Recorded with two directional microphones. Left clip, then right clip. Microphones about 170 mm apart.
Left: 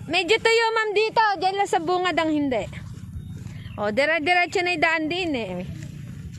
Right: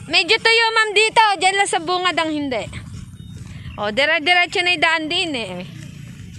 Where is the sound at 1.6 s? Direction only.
20° left (ahead or behind).